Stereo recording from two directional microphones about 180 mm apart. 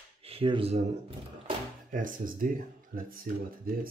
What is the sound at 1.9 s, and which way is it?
Speech, 50° right (ahead or behind).